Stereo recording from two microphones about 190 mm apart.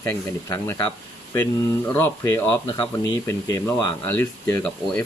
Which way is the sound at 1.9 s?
10° left (ahead or behind).